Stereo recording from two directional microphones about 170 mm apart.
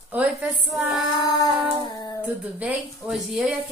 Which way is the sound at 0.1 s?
10° right (ahead or behind).